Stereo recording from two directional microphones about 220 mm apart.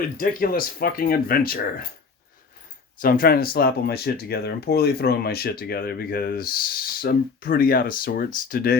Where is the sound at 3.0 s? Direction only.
40° left (ahead or behind).